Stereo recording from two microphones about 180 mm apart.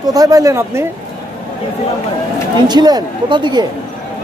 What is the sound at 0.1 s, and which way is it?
Speech, 20° right (ahead or behind).